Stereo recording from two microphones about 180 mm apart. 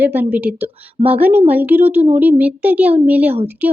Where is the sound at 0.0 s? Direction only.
10° right (ahead or behind).